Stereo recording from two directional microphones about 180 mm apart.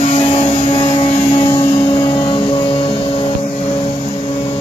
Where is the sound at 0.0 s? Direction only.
35° left (ahead or behind).